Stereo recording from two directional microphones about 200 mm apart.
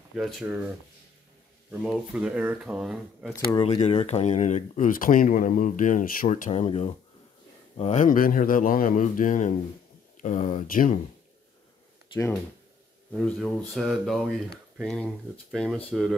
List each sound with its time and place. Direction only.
0.1 s speech: centre (ahead or behind)
1.7 s speech: 5° right (ahead or behind)
3.6 s speech: 30° left (ahead or behind)
12.1 s speech: 15° left (ahead or behind)
13.1 s speech: 5° left (ahead or behind)